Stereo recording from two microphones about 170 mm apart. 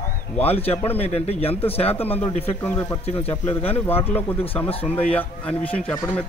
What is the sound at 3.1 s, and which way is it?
Speech, 35° left (ahead or behind).